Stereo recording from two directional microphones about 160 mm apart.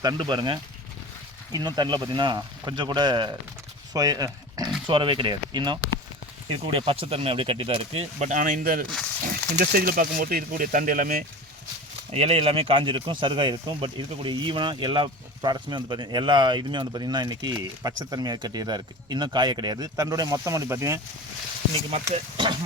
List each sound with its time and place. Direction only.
0.0 s speech: 25° right (ahead or behind)
3.9 s dog: 25° right (ahead or behind)
4.9 s speech: 30° right (ahead or behind); by 11.2 s 60° right (ahead or behind)
12.1 s speech: 40° right (ahead or behind); by 21.0 s 20° right (ahead or behind)
22.1 s speech: 35° right (ahead or behind)